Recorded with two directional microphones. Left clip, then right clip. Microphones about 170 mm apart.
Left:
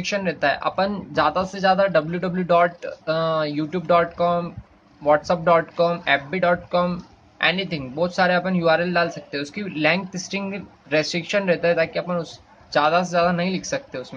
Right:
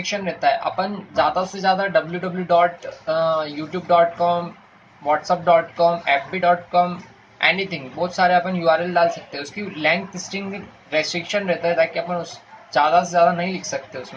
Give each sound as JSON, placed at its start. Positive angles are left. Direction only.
{"t": 0.2, "sound": "a man's voice", "side_deg": 40}